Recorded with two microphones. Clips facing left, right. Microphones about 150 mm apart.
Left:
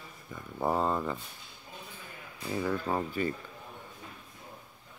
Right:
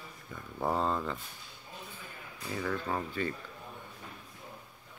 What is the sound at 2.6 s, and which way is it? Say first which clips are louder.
Speech: left 3 dB; 15° left (ahead or behind).